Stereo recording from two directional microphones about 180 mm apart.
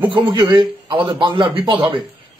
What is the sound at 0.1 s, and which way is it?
A man's voice, 25° right (ahead or behind).